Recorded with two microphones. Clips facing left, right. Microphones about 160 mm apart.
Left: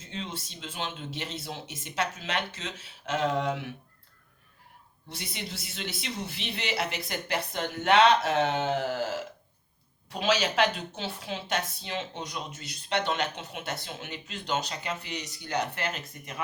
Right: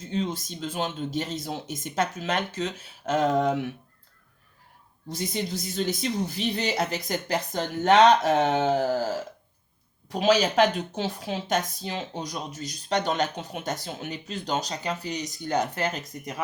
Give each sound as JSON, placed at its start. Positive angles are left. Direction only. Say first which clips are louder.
{"t": 0.0, "sound": "speech", "louder": "right 9 dB", "side_deg": -40}
{"t": 5.0, "sound": "speech", "louder": "right 9 dB", "side_deg": -40}
{"t": 10.2, "sound": "speech", "louder": "right 5 dB", "side_deg": -40}